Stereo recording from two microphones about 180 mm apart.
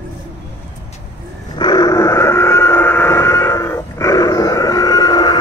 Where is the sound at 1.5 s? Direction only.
20° left (ahead or behind).